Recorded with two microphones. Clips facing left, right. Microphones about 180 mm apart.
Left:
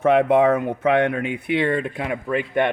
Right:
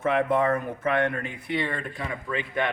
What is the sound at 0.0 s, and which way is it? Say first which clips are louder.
Speech: left 7 dB; 70° left (ahead or behind).